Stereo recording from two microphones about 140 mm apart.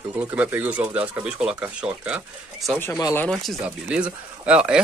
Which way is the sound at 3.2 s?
Centre (ahead or behind).